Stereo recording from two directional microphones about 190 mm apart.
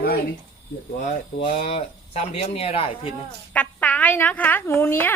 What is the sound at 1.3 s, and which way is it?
Speech, 35° left (ahead or behind).